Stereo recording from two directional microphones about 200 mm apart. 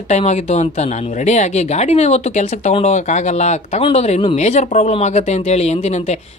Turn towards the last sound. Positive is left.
turn(degrees=35)  # may be behind; listen again after turning